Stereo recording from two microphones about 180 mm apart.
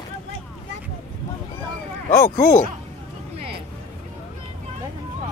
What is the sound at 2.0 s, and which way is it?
Speech, 50° left (ahead or behind).